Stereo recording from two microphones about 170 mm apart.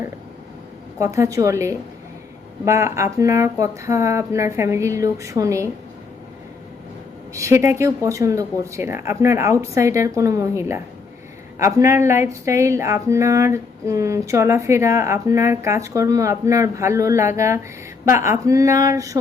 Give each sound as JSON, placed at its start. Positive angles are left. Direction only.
{"t": 0.9, "sound": "speech", "side_deg": -15}
{"t": 7.3, "sound": "speech", "side_deg": -15}